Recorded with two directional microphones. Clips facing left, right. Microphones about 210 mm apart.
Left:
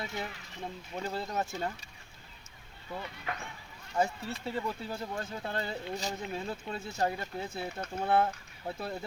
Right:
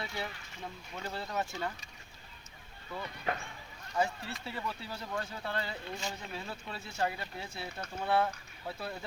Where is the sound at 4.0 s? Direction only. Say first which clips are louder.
Left 2 dB; 45° left (ahead or behind).